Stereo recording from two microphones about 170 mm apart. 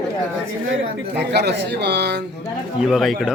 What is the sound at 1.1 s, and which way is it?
Speech, 80° right.